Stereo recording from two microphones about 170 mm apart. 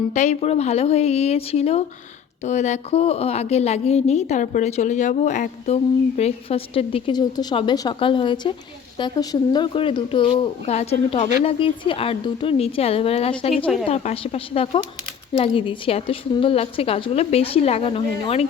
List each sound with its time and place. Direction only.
0.1 s a woman's voice: 45° left (ahead or behind)